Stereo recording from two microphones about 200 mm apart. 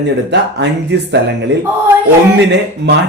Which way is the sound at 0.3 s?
60° right (ahead or behind).